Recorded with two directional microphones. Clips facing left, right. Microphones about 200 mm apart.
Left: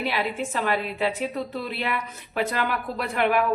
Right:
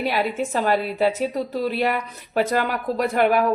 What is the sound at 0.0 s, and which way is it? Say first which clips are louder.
Speech: right 4 dB; 40° right (ahead or behind).